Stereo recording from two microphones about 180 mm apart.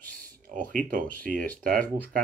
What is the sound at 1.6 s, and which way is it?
Speech, 50° right (ahead or behind).